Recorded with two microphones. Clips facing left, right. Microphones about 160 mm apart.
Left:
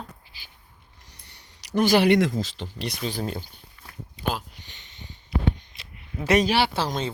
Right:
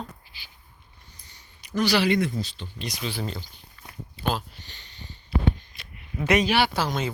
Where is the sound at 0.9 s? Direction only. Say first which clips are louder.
Left 2 dB; 80° left.